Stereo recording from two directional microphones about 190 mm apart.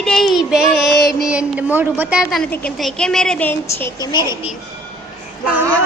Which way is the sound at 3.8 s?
15° left (ahead or behind).